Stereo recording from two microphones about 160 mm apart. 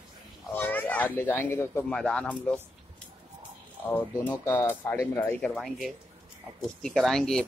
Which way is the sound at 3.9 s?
15° left (ahead or behind).